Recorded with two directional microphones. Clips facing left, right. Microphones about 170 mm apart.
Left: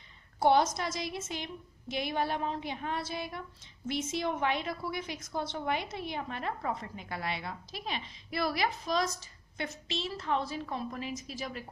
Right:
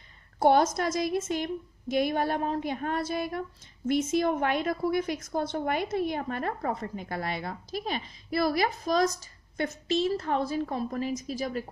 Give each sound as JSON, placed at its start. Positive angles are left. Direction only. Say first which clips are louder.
{"t": 0.4, "sound": "a woman's voice", "louder": "right 4 dB", "side_deg": -50}